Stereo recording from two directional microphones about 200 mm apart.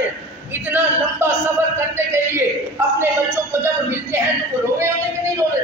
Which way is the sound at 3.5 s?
10° right (ahead or behind).